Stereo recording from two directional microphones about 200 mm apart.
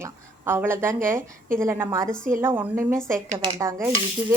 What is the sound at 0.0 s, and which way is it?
A woman's voice, 10° right (ahead or behind).